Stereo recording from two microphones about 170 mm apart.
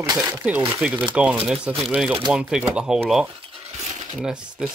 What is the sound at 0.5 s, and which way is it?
Speech, 5° right (ahead or behind).